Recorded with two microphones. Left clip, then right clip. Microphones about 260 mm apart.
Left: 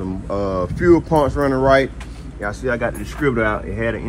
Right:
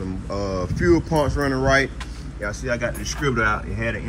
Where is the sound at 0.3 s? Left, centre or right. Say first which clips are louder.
Left 5 dB; left.